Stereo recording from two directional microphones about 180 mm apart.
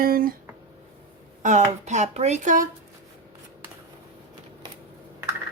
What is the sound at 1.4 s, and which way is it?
Speech, 45° right (ahead or behind).